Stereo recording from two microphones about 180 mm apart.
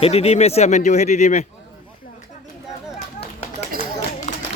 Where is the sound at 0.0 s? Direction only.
35° left (ahead or behind).